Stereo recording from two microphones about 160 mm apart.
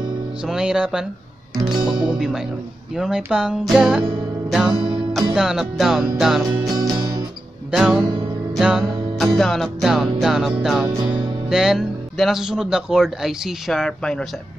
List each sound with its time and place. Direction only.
0.4 s speech: 5° right (ahead or behind)
1.7 s music: 30° right (ahead or behind)
2.1 s speech: 5° right (ahead or behind)
4.5 s music: 5° right (ahead or behind)
5.3 s speech: 5° right (ahead or behind)
6.6 s music: 20° right (ahead or behind)
7.7 s speech: centre (ahead or behind)
8.5 s music: 5° right (ahead or behind)
9.4 s speech: centre (ahead or behind)